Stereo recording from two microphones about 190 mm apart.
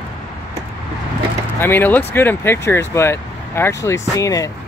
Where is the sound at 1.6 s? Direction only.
10° left (ahead or behind).